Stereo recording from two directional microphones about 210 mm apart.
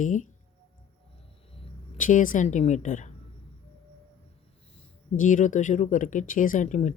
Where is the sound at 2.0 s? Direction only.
40° left (ahead or behind).